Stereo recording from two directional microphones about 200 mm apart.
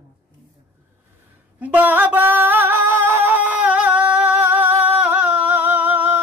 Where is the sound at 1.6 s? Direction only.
5° right (ahead or behind).